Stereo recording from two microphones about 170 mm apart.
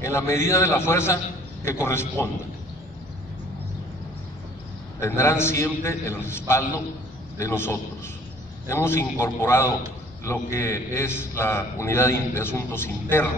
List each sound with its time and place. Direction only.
0.0 s a man's voice: 15° left (ahead or behind)
5.0 s a man's voice: 15° left (ahead or behind)